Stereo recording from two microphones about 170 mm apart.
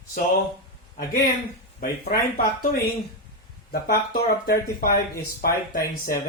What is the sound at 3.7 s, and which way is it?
Speech, 60° left (ahead or behind).